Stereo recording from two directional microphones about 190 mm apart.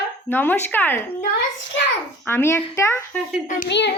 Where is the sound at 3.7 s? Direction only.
65° left (ahead or behind).